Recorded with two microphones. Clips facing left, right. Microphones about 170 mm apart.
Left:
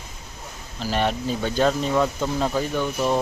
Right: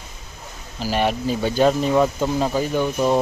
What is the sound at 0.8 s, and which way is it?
Speech, 5° right (ahead or behind).